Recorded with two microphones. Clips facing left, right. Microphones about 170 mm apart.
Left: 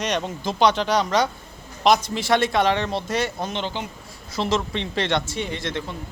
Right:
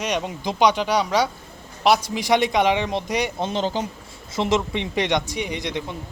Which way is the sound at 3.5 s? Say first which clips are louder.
Right 5 dB; 40° right (ahead or behind).